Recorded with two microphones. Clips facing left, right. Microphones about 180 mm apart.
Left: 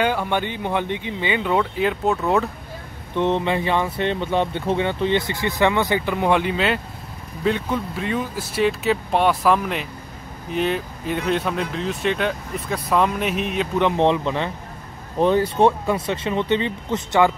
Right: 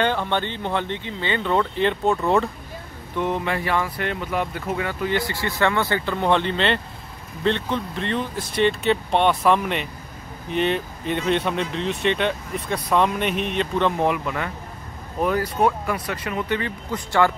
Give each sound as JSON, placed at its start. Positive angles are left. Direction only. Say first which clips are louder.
{"t": 0.0, "sound": "speech", "louder": "left 1 dB", "side_deg": 10}
{"t": 3.2, "sound": "speech", "louder": "left 4 dB", "side_deg": 20}
{"t": 13.8, "sound": "speech", "louder": "left 6 dB", "side_deg": 25}